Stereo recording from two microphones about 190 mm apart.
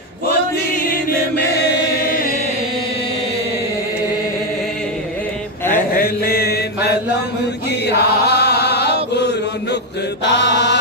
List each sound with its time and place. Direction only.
2.0 s chant: 50° left (ahead or behind)
5.9 s mantra: 50° left (ahead or behind)
7.8 s chant: 60° left (ahead or behind)